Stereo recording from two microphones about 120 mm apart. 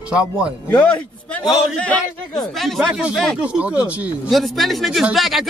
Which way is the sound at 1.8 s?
5° left (ahead or behind).